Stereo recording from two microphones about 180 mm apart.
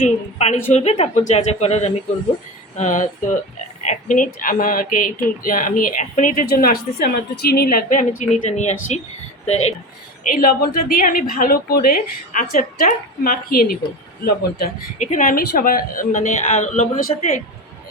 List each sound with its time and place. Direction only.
0.0 s speech: 40° left (ahead or behind)
10.3 s speech: 55° left (ahead or behind)
14.9 s speech: 45° left (ahead or behind)